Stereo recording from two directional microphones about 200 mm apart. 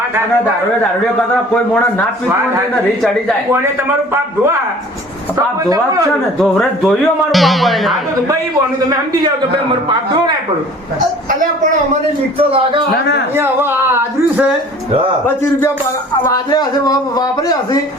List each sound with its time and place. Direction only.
5.6 s speech: 15° right (ahead or behind)
6.4 s speech: centre (ahead or behind)
12.4 s a man's voice: 25° right (ahead or behind)
13.3 s speech: 10° right (ahead or behind)
16.3 s speech: 20° left (ahead or behind)